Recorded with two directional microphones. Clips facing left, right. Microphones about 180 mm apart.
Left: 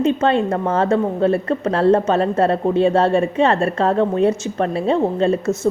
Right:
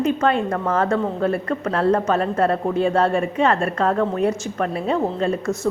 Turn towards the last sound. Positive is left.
turn(degrees=25)  # may be behind; listen again after turning